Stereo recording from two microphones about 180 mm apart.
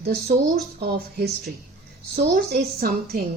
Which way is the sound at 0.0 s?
60° right (ahead or behind).